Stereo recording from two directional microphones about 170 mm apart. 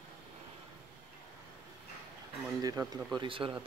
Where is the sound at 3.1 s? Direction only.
30° right (ahead or behind).